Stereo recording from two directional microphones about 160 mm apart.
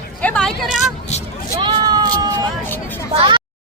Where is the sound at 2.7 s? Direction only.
15° left (ahead or behind).